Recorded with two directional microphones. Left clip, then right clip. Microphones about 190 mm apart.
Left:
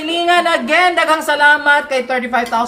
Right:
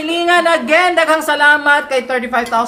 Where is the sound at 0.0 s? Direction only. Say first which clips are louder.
Right 1 dB; 15° right (ahead or behind).